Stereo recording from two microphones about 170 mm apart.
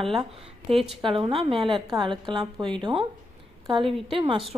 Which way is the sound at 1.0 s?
30° right (ahead or behind).